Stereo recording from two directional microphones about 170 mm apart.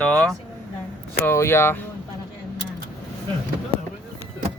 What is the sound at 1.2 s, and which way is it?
Speech, 15° left (ahead or behind).